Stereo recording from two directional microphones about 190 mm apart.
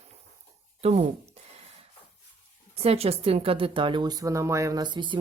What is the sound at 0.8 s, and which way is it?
Speech, 35° right (ahead or behind).